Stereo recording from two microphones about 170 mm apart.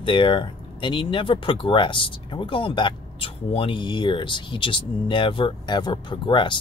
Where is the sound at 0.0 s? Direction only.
30° left (ahead or behind).